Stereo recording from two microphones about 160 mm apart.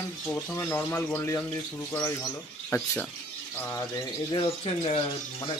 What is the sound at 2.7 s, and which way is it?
Speech, 10° left (ahead or behind).